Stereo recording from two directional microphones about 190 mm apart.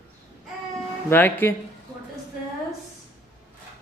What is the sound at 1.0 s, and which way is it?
Speech, 10° left (ahead or behind).